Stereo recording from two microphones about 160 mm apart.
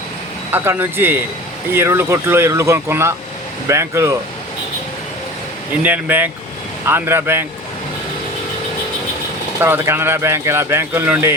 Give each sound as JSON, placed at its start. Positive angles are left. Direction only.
{"t": 0.5, "sound": "speech", "side_deg": -15}
{"t": 5.8, "sound": "speech", "side_deg": -10}
{"t": 9.6, "sound": "speech", "side_deg": -15}